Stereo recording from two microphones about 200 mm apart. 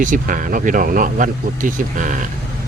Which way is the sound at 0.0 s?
40° right (ahead or behind).